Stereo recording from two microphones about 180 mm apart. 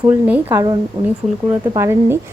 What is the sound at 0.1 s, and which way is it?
Speech, 10° right (ahead or behind).